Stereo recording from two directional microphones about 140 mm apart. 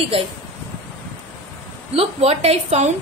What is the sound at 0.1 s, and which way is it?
Speech, 40° right (ahead or behind).